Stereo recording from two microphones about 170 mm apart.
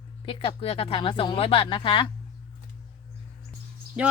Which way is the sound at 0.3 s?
30° left (ahead or behind).